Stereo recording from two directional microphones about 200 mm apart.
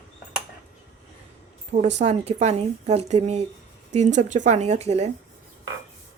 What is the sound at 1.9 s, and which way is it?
Speech, 30° right (ahead or behind).